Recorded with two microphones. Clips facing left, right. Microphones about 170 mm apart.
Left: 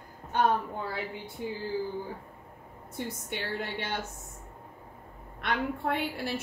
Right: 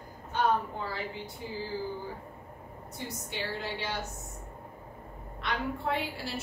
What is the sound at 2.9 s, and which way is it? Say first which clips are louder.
A woman's voice: left 3 dB; 55° left (ahead or behind).